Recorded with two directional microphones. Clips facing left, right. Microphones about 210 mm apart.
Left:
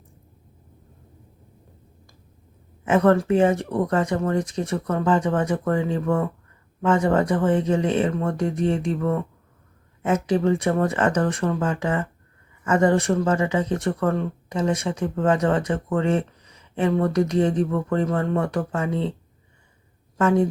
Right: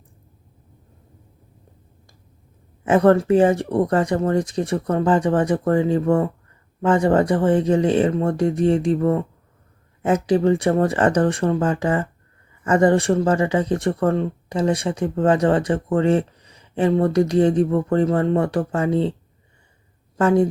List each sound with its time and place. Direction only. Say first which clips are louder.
2.8 s speech: right 3 dB; 35° right (ahead or behind)
20.1 s a woman's voice: right 3 dB; 35° right (ahead or behind)